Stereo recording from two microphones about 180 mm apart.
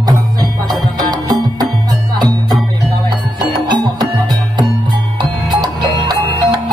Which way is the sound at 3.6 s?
25° right (ahead or behind).